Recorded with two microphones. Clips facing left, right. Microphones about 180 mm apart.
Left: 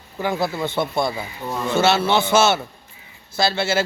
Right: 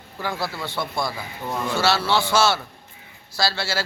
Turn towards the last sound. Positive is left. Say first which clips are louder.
# left 5 dB
turn(degrees=20)  # may be behind; listen again after turning